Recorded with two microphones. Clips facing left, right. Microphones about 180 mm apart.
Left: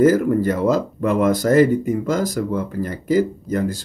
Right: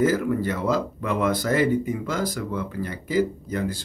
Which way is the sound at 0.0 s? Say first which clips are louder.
Left 7 dB; 45° left (ahead or behind).